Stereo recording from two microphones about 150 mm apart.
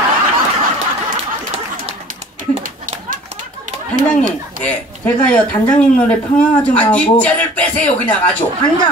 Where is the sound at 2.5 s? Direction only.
60° right (ahead or behind).